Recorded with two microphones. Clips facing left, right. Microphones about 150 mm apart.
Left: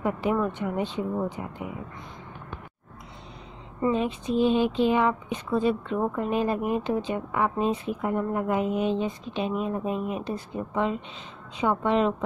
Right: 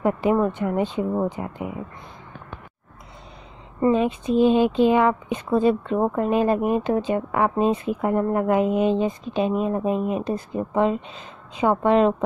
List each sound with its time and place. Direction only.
0.0 s speech: 60° right (ahead or behind)
0.4 s a woman's voice: 45° right (ahead or behind)
3.8 s a woman's voice: 55° right (ahead or behind)
5.5 s a woman's voice: 45° right (ahead or behind); by 8.9 s 80° right
8.9 s a woman's voice: 45° right (ahead or behind)